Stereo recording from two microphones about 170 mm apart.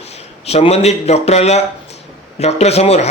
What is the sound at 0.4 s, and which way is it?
Speech, 35° left (ahead or behind).